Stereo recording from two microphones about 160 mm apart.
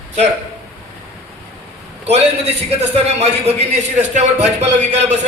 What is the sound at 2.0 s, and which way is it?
A man's voice, 40° right (ahead or behind).